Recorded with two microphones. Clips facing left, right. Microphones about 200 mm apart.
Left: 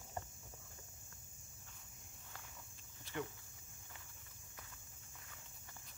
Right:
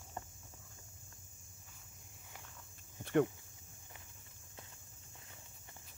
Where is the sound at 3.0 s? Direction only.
60° right (ahead or behind).